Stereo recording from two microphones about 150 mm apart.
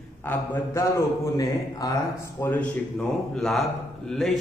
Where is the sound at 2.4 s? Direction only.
10° left (ahead or behind).